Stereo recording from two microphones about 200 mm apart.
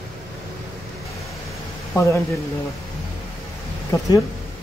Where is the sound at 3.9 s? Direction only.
15° left (ahead or behind).